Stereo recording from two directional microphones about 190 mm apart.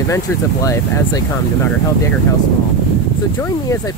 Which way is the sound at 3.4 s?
15° left (ahead or behind).